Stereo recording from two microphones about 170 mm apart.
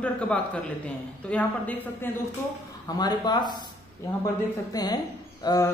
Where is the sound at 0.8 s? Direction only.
10° left (ahead or behind).